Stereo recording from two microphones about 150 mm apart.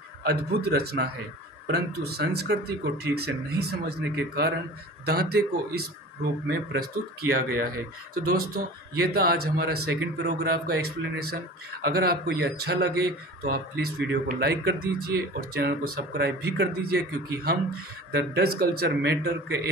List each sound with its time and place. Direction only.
0.2 s speech: 90° right
5.0 s speech: 90° right